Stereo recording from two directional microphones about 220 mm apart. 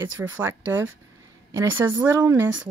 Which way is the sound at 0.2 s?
10° right (ahead or behind).